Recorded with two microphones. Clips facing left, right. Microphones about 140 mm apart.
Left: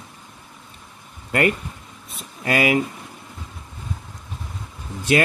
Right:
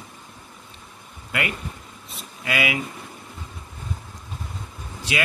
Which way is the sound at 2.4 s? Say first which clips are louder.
Left 6 dB; 45° left (ahead or behind).